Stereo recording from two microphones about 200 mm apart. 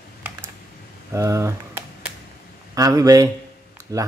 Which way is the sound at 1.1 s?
15° right (ahead or behind).